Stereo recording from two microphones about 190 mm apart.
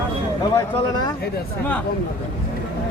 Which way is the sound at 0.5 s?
20° left (ahead or behind).